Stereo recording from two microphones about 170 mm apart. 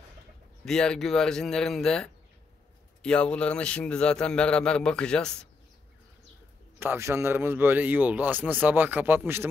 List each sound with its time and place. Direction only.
0.7 s a man's voice: 5° left (ahead or behind)
6.8 s a man's voice: 15° right (ahead or behind)